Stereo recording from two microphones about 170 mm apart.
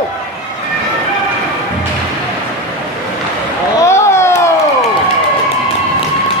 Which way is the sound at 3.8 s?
15° left (ahead or behind).